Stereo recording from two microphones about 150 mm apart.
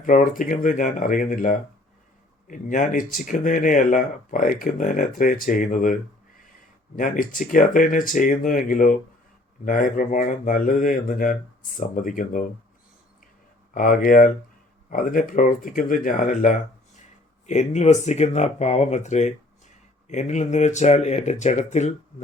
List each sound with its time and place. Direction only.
0.0 s speech: 60° left (ahead or behind)
13.7 s speech: 65° left (ahead or behind); by 21.9 s 50° left (ahead or behind)